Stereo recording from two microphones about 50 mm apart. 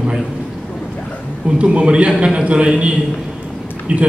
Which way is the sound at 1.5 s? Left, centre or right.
Right.